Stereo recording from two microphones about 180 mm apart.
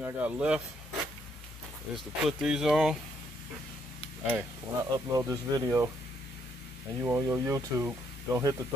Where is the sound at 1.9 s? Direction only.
Centre (ahead or behind).